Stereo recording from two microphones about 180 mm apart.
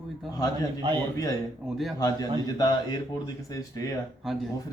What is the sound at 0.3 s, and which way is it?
Speech, 20° left (ahead or behind).